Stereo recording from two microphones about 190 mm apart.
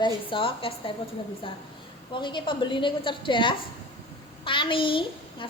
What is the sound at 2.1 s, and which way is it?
A child's voice, 25° left (ahead or behind).